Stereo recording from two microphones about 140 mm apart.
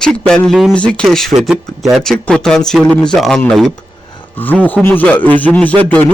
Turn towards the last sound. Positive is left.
turn(degrees=10)  # may be behind; listen again after turning